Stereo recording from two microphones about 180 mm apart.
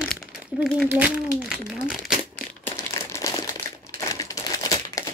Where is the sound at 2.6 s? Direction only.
15° left (ahead or behind).